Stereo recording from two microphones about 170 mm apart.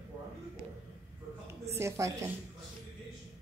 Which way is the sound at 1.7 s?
15° right (ahead or behind).